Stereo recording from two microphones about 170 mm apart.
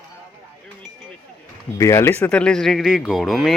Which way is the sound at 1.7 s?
15° left (ahead or behind).